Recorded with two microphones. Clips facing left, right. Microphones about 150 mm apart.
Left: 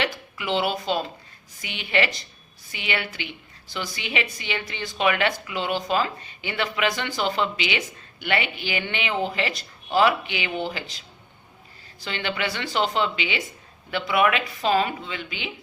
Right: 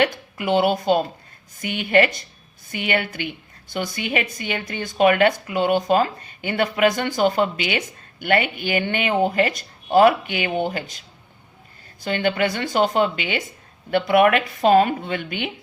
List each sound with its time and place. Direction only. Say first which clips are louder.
0.0 s a woman's voice: right 7 dB; 50° right (ahead or behind)
12.0 s a woman's voice: right 7 dB; 45° right (ahead or behind)